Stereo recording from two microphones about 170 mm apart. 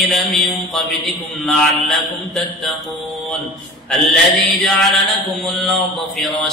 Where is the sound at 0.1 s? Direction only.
Centre (ahead or behind).